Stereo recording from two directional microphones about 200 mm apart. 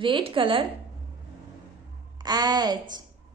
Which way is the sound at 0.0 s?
25° right (ahead or behind).